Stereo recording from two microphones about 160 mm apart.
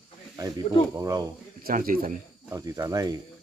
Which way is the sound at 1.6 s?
60° right (ahead or behind).